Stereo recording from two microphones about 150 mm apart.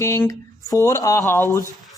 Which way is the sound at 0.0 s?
20° left (ahead or behind).